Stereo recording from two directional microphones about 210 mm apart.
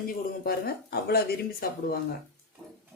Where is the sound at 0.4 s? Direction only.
45° left (ahead or behind).